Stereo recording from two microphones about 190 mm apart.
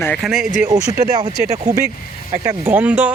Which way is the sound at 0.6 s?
20° right (ahead or behind).